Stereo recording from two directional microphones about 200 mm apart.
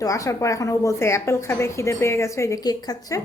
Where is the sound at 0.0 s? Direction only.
15° left (ahead or behind).